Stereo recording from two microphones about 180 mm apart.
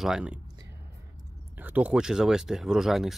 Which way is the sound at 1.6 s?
10° right (ahead or behind).